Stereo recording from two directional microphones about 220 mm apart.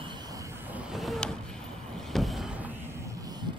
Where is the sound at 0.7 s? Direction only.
Centre (ahead or behind).